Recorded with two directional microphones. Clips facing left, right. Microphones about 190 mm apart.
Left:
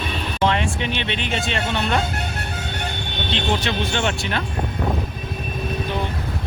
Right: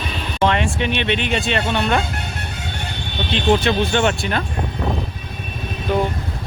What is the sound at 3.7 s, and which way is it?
Speech, 50° right (ahead or behind).